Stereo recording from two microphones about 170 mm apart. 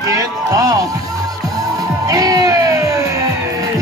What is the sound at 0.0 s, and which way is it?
Music, 20° right (ahead or behind).